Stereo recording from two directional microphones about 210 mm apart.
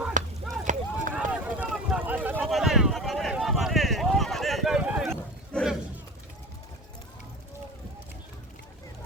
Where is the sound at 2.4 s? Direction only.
Centre (ahead or behind).